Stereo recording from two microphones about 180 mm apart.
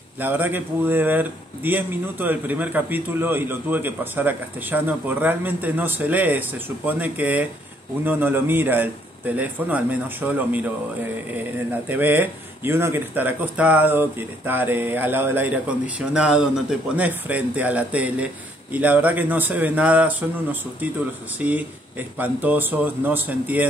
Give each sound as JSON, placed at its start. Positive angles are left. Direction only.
{"t": 0.2, "sound": "speech", "side_deg": -10}
{"t": 21.4, "sound": "speech", "side_deg": -10}